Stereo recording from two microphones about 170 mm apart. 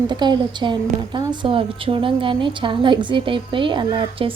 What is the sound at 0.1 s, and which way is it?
A woman's voice, 25° right (ahead or behind).